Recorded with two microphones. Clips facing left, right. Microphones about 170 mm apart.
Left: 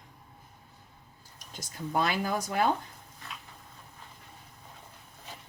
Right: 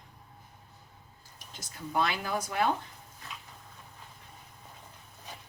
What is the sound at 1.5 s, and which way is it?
Speech, 45° left (ahead or behind).